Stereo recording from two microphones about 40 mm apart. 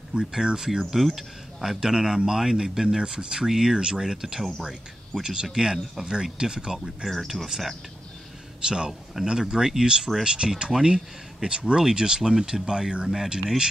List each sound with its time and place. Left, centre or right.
0.1 s speech: centre
7.1 s speech: centre
8.6 s speech: centre